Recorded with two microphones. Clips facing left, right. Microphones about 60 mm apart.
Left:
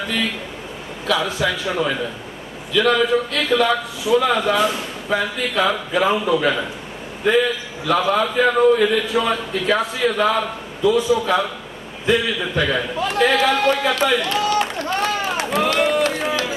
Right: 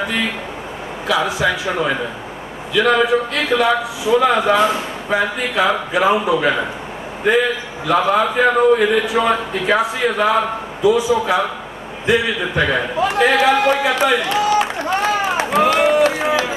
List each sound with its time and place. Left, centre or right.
0.0 s a man's voice: centre